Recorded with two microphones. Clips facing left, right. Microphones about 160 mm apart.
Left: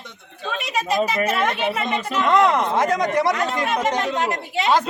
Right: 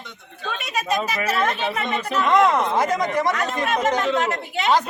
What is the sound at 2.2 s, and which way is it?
Speech, 10° right (ahead or behind).